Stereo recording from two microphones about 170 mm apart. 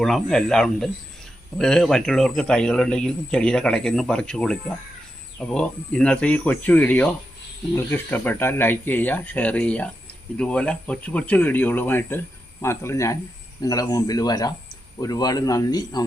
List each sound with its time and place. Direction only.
0.0 s a man's voice: centre (ahead or behind); by 16.0 s 25° left (ahead or behind)